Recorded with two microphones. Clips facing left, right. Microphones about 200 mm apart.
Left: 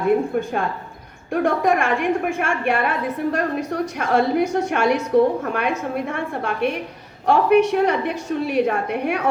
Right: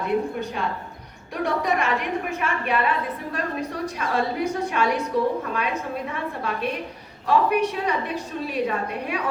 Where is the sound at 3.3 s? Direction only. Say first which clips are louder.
Left 8 dB; 70° left (ahead or behind).